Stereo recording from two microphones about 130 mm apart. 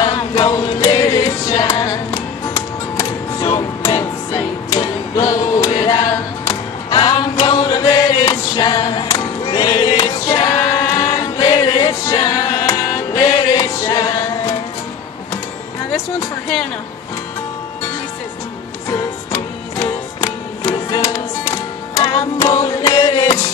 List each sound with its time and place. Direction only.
0.3 s chant: 30° left (ahead or behind)
1.2 s music: 30° left (ahead or behind)
18.9 s music: 25° left (ahead or behind)
22.5 s music: 35° left (ahead or behind)